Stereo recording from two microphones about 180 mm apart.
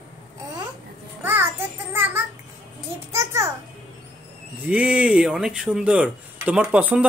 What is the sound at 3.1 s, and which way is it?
Speech, 15° right (ahead or behind).